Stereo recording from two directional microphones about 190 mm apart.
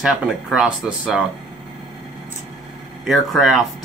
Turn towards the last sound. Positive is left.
turn(degrees=0)  # may be behind; listen again after turning